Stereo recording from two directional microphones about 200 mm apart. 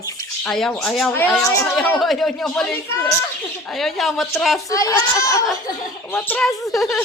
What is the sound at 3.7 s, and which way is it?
Speech, centre (ahead or behind).